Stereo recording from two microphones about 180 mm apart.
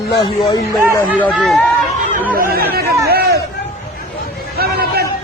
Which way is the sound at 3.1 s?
60° right (ahead or behind).